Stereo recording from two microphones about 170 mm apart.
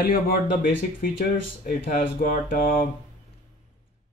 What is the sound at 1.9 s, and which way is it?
Speech, 55° left (ahead or behind).